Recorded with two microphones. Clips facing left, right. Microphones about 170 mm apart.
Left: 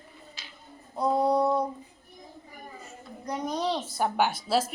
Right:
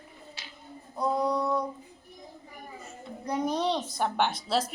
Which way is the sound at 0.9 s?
25° left (ahead or behind).